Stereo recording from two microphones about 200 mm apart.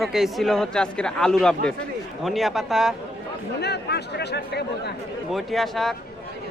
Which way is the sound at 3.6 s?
55° left (ahead or behind).